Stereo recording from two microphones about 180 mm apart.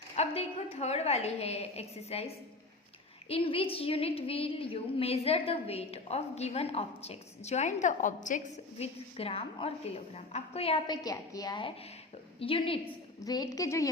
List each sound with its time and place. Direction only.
0.2 s a woman's voice: 35° left (ahead or behind)
8.8 s a woman's voice: 35° left (ahead or behind)
11.0 s a woman's voice: 20° left (ahead or behind)